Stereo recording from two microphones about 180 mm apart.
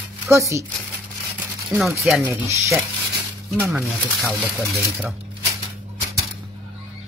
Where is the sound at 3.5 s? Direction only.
10° right (ahead or behind).